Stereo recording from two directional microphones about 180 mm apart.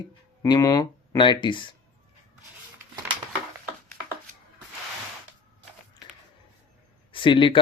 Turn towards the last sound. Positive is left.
turn(degrees=30)  # may be behind; listen again after turning